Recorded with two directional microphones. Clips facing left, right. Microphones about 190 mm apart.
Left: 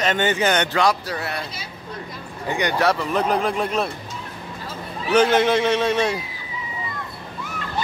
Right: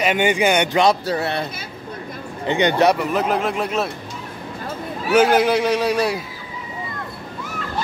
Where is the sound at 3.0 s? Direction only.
5° right (ahead or behind).